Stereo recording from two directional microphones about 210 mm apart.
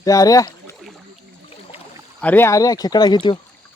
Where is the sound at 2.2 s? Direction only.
10° left (ahead or behind).